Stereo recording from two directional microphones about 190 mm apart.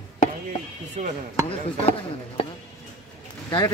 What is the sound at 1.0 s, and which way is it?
Chopping, 35° right (ahead or behind).